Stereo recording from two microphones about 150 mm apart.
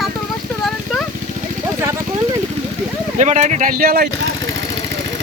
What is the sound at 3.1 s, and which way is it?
Speech, 50° right (ahead or behind).